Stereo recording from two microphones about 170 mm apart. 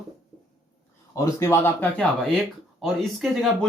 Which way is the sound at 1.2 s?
15° left (ahead or behind).